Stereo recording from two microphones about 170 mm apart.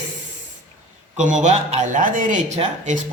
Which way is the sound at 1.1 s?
45° right (ahead or behind).